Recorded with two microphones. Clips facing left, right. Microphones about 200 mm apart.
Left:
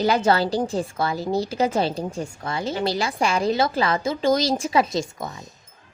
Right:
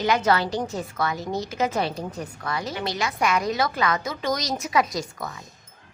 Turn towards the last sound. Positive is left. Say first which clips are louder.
# left 3 dB
turn(degrees=25)  # may be behind; listen again after turning